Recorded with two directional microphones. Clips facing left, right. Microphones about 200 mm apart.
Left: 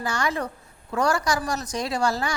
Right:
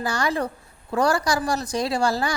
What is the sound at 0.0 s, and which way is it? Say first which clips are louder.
A woman's voice: right 2 dB; 35° right (ahead or behind).